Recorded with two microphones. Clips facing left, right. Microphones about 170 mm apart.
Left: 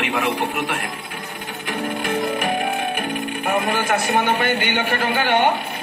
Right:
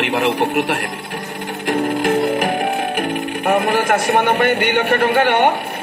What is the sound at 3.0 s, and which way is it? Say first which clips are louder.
Speech: right 4 dB; 50° right (ahead or behind).